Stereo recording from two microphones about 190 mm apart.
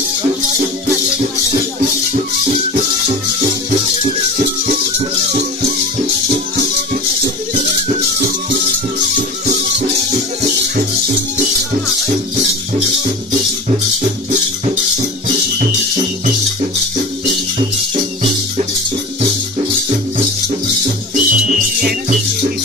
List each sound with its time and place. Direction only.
4.0 s music: 40° right (ahead or behind)
21.1 s music: 45° right (ahead or behind)